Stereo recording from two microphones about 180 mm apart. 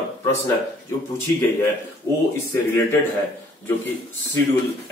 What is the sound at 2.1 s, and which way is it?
Speech, 15° left (ahead or behind).